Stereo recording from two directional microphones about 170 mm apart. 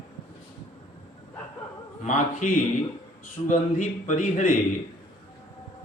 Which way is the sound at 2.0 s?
45° left (ahead or behind).